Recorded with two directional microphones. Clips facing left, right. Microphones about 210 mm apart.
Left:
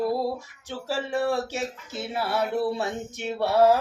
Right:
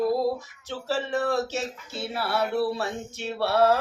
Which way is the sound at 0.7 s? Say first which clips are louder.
Right 1 dB; 15° left (ahead or behind).